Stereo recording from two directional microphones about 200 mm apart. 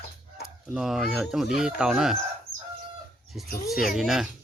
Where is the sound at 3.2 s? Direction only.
Centre (ahead or behind).